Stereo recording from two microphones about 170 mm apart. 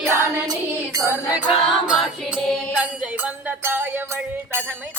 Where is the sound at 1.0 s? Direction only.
5° right (ahead or behind).